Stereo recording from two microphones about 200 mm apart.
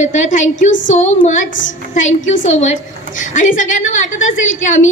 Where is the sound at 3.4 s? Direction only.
40° left (ahead or behind).